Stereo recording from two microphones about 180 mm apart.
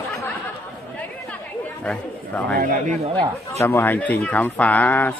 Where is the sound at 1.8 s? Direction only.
5° left (ahead or behind).